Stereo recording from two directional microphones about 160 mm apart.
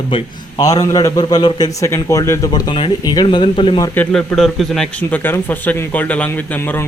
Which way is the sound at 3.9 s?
10° left (ahead or behind).